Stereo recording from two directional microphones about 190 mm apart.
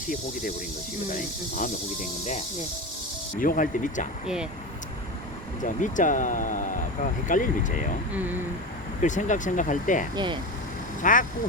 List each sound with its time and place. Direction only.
1.1 s speech: 40° left (ahead or behind)
3.3 s speech: 45° left (ahead or behind)
5.6 s speech: 40° left (ahead or behind)
8.1 s speech: 10° right (ahead or behind)
9.0 s speech: 40° left (ahead or behind)